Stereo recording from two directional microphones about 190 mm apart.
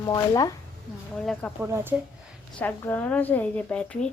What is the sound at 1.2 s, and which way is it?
Speech, centre (ahead or behind).